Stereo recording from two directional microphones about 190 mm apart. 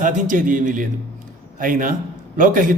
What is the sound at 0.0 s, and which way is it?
A man's voice, 45° right (ahead or behind).